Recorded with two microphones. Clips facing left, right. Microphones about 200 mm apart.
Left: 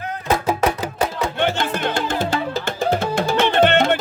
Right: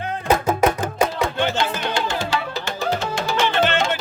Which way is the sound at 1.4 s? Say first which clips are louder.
Left 4 dB; 50° left (ahead or behind).